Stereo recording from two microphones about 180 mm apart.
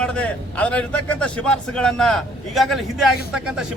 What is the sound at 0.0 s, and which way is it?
A man's voice, 5° left (ahead or behind).